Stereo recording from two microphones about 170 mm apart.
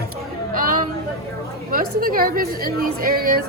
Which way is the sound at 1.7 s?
60° right (ahead or behind).